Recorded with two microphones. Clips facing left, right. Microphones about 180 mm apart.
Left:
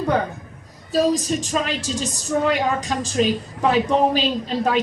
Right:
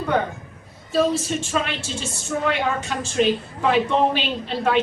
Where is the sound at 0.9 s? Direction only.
40° left (ahead or behind).